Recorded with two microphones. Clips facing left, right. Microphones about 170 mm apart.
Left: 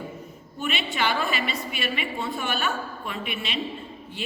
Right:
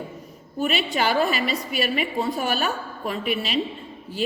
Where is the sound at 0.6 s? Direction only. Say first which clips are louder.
Right 4 dB; 40° right (ahead or behind).